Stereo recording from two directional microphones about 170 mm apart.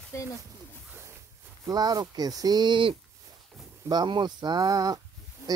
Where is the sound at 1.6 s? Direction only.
20° right (ahead or behind).